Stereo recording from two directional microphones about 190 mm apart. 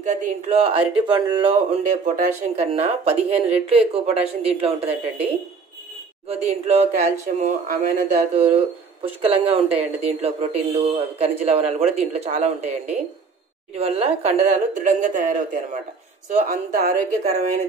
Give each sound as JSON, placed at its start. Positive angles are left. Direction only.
{"t": 0.0, "sound": "speech", "side_deg": -40}
{"t": 1.8, "sound": "speech", "side_deg": -40}
{"t": 13.7, "sound": "speech", "side_deg": -30}